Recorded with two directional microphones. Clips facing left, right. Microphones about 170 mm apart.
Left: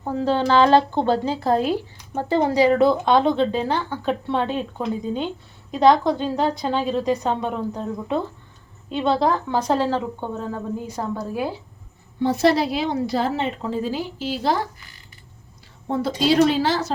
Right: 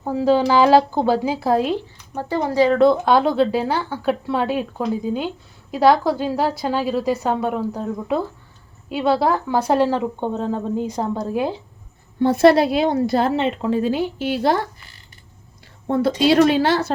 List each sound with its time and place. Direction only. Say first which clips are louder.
0.0 s a woman's voice: right 4 dB; 10° right (ahead or behind)
2.3 s speech: even; 15° left (ahead or behind)
2.8 s a woman's voice: right 2 dB; centre (ahead or behind); by 11.6 s 20° right (ahead or behind)
12.2 s a woman's voice: right 5 dB; 55° right (ahead or behind)
15.9 s a woman's voice: right 4 dB; 60° right (ahead or behind)